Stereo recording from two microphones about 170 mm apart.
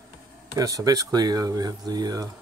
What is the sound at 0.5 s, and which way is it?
Speech, 20° right (ahead or behind).